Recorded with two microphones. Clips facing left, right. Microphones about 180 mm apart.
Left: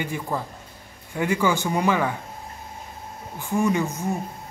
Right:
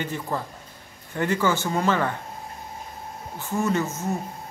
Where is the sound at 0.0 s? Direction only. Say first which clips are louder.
Left 1 dB; 10° left (ahead or behind).